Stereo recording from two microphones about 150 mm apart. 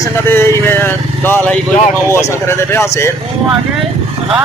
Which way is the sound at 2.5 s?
15° left (ahead or behind).